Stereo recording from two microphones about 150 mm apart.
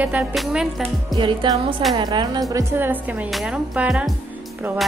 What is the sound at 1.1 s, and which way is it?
Music, 30° right (ahead or behind).